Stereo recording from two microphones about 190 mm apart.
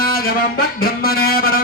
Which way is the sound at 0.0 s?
50° left (ahead or behind).